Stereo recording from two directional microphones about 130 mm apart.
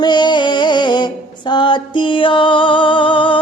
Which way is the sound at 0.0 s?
35° left (ahead or behind).